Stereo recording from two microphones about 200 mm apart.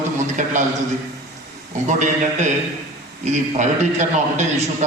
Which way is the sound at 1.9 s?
35° right (ahead or behind).